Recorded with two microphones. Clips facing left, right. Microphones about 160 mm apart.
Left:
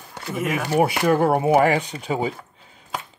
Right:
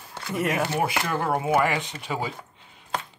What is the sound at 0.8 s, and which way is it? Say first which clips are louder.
Speech: left 8 dB; 60° left (ahead or behind).